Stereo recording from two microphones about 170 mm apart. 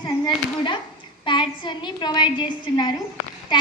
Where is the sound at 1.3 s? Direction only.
25° left (ahead or behind).